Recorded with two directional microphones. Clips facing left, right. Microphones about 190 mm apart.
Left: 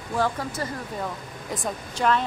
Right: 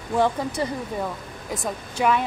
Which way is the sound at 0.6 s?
20° right (ahead or behind).